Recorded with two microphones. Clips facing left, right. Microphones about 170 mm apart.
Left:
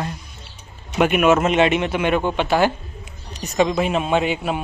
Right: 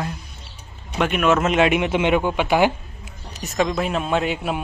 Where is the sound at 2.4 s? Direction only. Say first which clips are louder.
Even; 15° right (ahead or behind).